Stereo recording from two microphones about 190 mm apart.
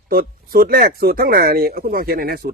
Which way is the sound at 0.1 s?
50° right (ahead or behind).